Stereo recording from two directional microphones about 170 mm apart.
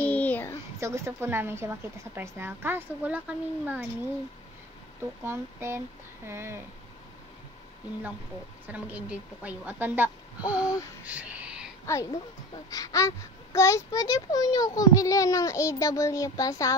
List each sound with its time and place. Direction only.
0.0 s a sound: 10° left (ahead or behind)
0.7 s a woman's voice: 15° right (ahead or behind)
5.2 s a woman's voice: 15° right (ahead or behind)
8.6 s a woman's voice: 10° right (ahead or behind)
11.1 s a sound: 10° right (ahead or behind)
11.8 s a woman's voice: 15° left (ahead or behind)